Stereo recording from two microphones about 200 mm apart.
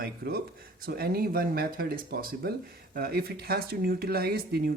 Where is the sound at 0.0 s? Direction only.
50° right (ahead or behind).